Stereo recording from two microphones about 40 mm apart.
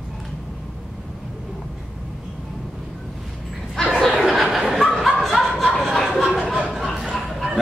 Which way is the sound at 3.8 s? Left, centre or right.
Centre.